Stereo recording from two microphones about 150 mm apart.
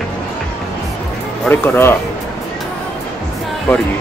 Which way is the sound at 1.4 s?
15° left (ahead or behind).